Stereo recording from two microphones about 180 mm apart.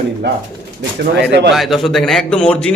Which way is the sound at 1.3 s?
70° right (ahead or behind).